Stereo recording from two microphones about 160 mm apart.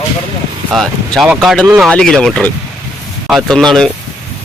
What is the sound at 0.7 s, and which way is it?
Speech, centre (ahead or behind).